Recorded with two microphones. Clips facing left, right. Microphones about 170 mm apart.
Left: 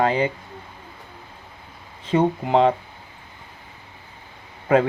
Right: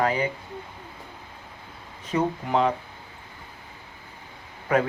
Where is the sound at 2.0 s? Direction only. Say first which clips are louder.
Left 6 dB; 30° left (ahead or behind).